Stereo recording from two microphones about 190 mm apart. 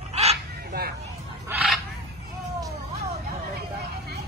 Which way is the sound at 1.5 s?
5° right (ahead or behind).